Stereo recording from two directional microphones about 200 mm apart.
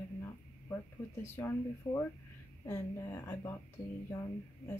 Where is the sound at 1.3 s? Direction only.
15° left (ahead or behind).